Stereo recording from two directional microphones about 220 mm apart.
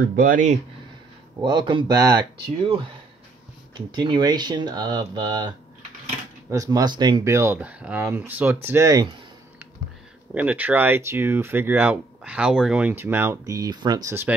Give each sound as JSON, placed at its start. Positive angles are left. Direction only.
{"t": 0.1, "sound": "speech", "side_deg": -35}
{"t": 1.4, "sound": "speech", "side_deg": -20}
{"t": 6.5, "sound": "speech", "side_deg": -15}
{"t": 10.3, "sound": "speech", "side_deg": -5}